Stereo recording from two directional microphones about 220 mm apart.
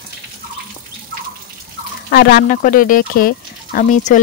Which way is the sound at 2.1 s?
45° left (ahead or behind).